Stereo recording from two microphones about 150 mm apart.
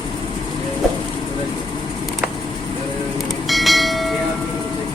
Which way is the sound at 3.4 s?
Centre (ahead or behind).